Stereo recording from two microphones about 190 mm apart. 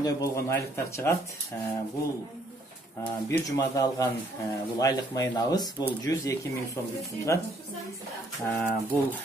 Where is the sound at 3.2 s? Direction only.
15° left (ahead or behind).